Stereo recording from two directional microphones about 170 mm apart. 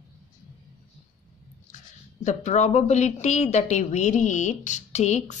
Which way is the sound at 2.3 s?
40° left (ahead or behind).